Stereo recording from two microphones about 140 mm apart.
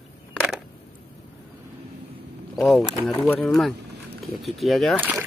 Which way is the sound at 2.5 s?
Centre (ahead or behind).